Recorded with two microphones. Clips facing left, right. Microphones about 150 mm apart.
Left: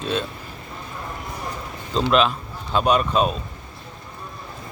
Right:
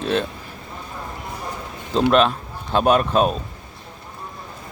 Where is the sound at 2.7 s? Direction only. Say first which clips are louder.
Right 2 dB; 50° right (ahead or behind).